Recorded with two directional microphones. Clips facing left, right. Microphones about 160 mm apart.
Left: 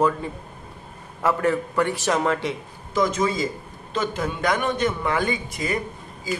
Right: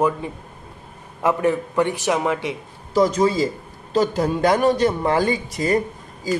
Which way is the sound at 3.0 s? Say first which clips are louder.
Right 5 dB; 35° right (ahead or behind).